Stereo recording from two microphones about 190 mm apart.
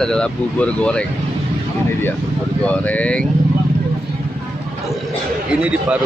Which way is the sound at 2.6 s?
5° left (ahead or behind).